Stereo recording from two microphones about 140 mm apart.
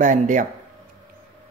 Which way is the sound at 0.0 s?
65° right (ahead or behind).